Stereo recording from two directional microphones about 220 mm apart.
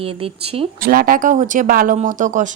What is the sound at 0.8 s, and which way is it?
Speech, 40° right (ahead or behind).